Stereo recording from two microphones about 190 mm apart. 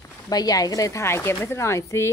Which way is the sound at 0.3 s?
20° left (ahead or behind).